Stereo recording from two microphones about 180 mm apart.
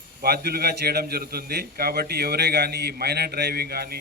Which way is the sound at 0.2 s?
60° right (ahead or behind).